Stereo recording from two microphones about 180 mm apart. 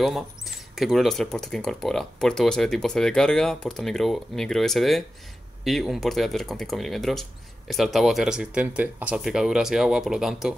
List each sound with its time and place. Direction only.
0.0 s speech: centre (ahead or behind)